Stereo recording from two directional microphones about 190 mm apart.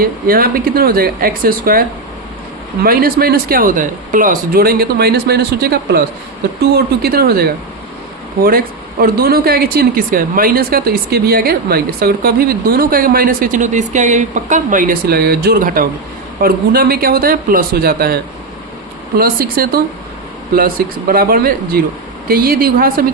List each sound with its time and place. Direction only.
0.0 s speech: 50° right (ahead or behind)
2.8 s speech: 50° right (ahead or behind)